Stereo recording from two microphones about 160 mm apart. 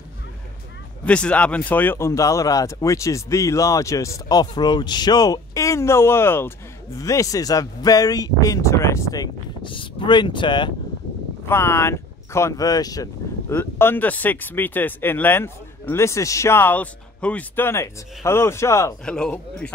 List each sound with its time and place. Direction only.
1.0 s speech: 5° left (ahead or behind); by 10.7 s 30° left (ahead or behind)
11.4 s speech: 15° left (ahead or behind)
19.0 s a man's voice: 5° left (ahead or behind)